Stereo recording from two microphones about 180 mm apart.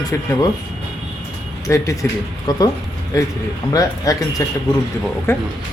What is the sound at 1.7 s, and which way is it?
Speech, 15° left (ahead or behind).